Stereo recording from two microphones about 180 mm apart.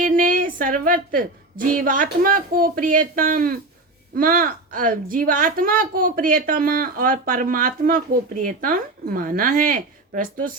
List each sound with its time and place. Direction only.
0.0 s a woman's voice: 50° right (ahead or behind)